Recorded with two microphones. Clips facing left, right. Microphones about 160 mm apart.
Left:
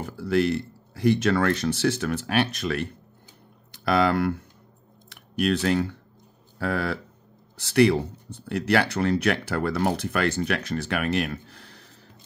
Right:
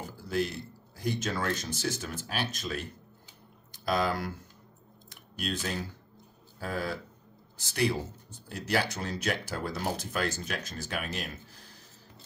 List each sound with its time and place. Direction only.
0.0 s speech: 70° left (ahead or behind)